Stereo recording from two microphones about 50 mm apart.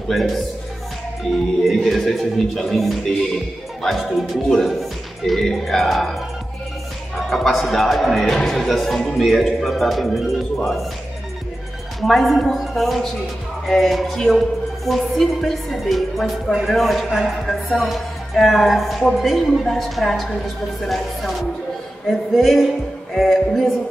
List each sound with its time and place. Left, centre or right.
0.1 s speech: centre
1.6 s speech: centre
7.2 s speech: centre
12.0 s speech: centre